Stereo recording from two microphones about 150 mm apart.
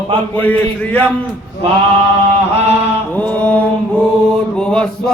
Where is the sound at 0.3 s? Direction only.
10° left (ahead or behind).